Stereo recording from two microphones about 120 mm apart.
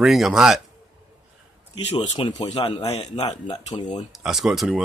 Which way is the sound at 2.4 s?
45° left (ahead or behind).